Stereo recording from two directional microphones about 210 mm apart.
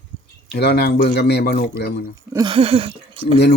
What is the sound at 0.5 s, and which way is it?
Speech, 50° left (ahead or behind).